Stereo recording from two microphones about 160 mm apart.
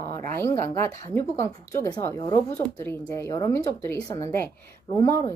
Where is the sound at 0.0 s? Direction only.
15° left (ahead or behind).